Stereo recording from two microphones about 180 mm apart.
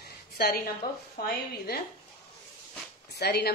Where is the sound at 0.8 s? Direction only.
55° left (ahead or behind).